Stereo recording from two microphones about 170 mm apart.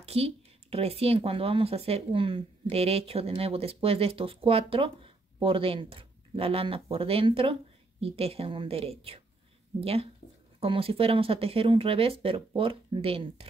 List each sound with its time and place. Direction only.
0.0 s speech: 35° right (ahead or behind)